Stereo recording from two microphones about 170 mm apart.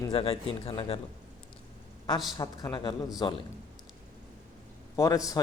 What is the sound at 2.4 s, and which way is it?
Speech, 20° left (ahead or behind).